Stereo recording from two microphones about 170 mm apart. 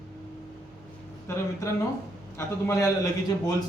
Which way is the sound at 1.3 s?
15° left (ahead or behind).